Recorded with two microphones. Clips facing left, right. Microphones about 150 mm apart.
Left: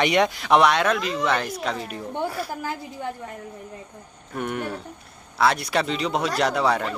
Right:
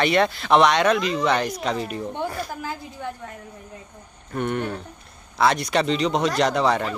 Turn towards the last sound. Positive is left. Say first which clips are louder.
# right 1 dB
turn(degrees=5)  # may be behind; listen again after turning